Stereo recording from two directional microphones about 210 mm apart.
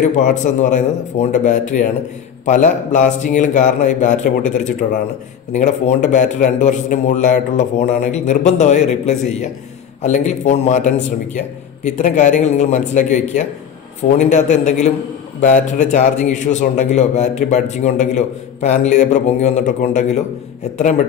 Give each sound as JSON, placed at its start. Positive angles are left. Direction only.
{"t": 0.2, "sound": "a man's voice", "side_deg": 35}